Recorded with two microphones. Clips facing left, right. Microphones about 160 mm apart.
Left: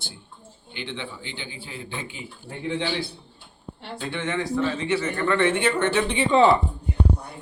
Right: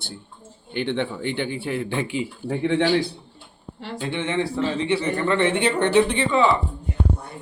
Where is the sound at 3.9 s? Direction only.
25° right (ahead or behind).